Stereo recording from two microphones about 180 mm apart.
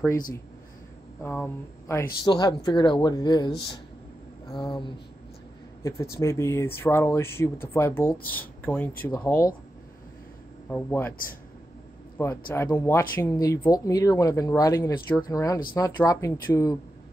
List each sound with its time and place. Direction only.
1.2 s speech: 10° left (ahead or behind)
2.2 s speech: 25° left (ahead or behind)
6.1 s speech: 15° left (ahead or behind)
10.7 s speech: 10° left (ahead or behind)
12.2 s speech: 15° left (ahead or behind)